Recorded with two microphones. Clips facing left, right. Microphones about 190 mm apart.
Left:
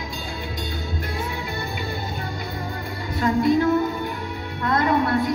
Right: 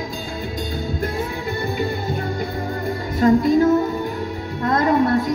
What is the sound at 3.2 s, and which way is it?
Music, 40° right (ahead or behind).